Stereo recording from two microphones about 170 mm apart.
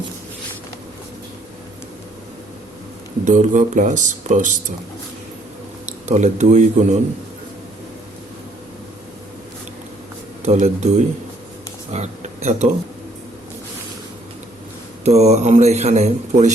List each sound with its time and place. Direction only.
3.2 s speech: 45° right (ahead or behind)
6.1 s speech: 40° right (ahead or behind)
10.4 s a man's voice: 40° right (ahead or behind)
15.0 s a man's voice: 40° right (ahead or behind)